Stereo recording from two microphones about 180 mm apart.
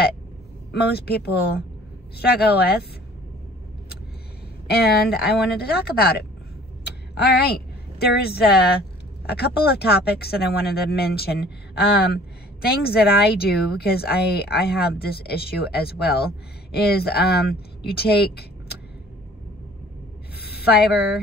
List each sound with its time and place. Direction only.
0.7 s a woman's voice: 65° left (ahead or behind)
4.7 s a woman's voice: 60° left (ahead or behind)
20.3 s a sound: 60° left (ahead or behind)